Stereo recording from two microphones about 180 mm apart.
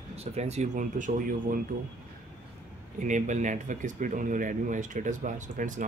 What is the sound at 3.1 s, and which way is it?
Speech, 45° right (ahead or behind).